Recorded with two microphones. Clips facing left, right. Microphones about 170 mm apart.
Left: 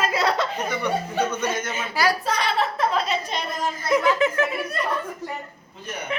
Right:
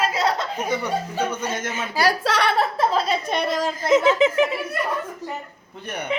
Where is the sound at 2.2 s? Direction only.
90° right.